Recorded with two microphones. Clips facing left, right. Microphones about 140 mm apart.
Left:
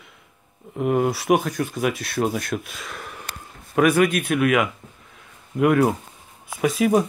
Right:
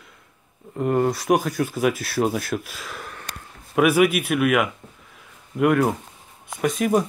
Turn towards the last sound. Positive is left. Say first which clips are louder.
# left 2 dB
turn(degrees=0)  # may be behind; listen again after turning